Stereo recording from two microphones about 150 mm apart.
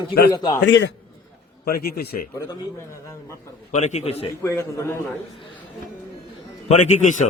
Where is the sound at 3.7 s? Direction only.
50° left (ahead or behind).